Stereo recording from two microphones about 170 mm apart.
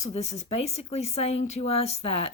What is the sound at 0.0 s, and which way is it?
Speech, 40° left (ahead or behind).